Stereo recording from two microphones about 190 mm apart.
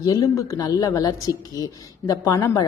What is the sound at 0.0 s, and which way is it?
A woman's voice, 20° left (ahead or behind).